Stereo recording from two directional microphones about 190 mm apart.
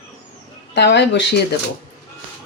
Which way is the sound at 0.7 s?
65° left (ahead or behind).